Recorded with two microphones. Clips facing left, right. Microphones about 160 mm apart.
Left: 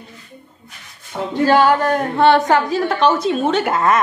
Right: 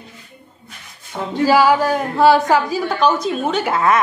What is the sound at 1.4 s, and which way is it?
A woman's voice, 5° right (ahead or behind).